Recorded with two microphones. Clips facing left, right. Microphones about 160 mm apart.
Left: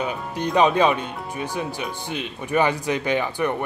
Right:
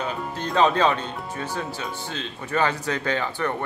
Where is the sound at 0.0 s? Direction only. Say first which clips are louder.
Left 3 dB; 15° left (ahead or behind).